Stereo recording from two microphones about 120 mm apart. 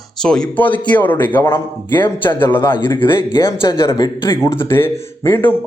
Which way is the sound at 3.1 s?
25° left (ahead or behind).